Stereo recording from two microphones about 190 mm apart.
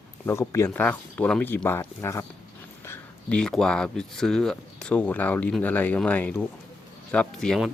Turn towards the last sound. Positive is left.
turn(degrees=0)  # may be behind; listen again after turning